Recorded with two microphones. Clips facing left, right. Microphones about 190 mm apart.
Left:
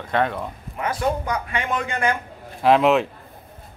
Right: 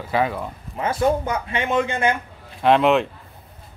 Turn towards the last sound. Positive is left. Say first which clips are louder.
# even
turn(degrees=0)  # may be behind; listen again after turning